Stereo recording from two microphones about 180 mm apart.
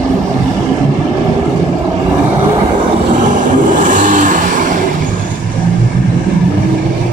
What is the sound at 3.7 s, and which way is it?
Vehicle, 45° right (ahead or behind).